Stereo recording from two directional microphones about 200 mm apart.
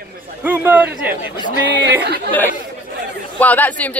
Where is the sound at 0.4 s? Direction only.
10° right (ahead or behind).